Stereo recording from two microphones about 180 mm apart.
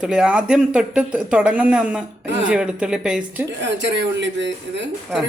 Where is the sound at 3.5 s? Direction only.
80° right.